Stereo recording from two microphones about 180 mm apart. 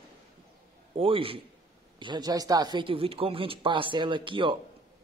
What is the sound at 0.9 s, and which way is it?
A man's voice, 30° right (ahead or behind).